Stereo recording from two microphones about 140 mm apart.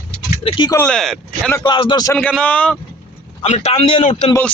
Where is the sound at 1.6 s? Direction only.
35° left (ahead or behind).